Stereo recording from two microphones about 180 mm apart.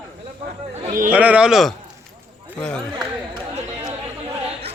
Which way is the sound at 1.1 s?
10° right (ahead or behind).